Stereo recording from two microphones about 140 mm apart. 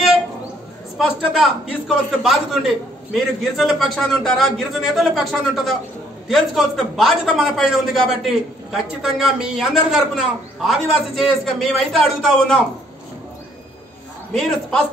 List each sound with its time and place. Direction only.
0.9 s a man's voice: centre (ahead or behind)
14.3 s a man's voice: centre (ahead or behind)